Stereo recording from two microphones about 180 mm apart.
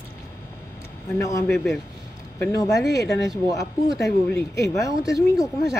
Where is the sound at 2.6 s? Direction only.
20° left (ahead or behind).